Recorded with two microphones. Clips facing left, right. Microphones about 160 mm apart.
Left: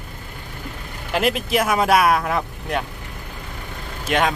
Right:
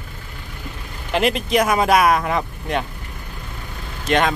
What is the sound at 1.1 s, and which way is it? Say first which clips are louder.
Speech: right 2 dB; 5° left (ahead or behind).